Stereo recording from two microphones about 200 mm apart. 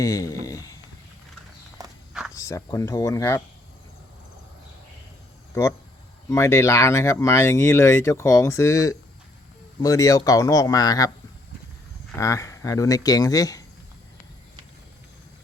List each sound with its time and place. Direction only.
0.0 s speech: 15° left (ahead or behind)
0.4 s a sound: 15° left (ahead or behind)
1.8 s walk: 20° right (ahead or behind)
2.3 s speech: 15° left (ahead or behind)
6.3 s speech: 15° left (ahead or behind)
12.1 s speech: 15° left (ahead or behind)